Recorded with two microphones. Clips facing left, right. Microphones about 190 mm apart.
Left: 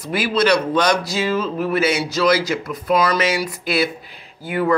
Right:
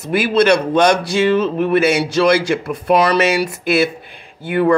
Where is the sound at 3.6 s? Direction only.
55° right (ahead or behind).